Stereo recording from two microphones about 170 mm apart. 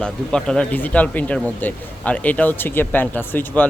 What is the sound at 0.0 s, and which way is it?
Speech, 5° left (ahead or behind).